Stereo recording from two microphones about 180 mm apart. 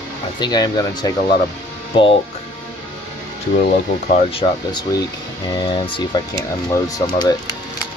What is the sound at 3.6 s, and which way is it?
Speech, 50° left (ahead or behind).